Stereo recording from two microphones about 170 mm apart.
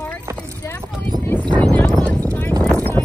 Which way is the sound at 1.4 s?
25° right (ahead or behind).